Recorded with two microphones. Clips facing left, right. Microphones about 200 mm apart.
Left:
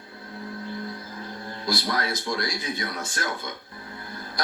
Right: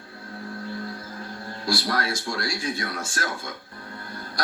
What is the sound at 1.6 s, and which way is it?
Speech, 20° left (ahead or behind).